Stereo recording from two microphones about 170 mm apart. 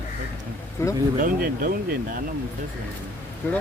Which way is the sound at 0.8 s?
15° left (ahead or behind).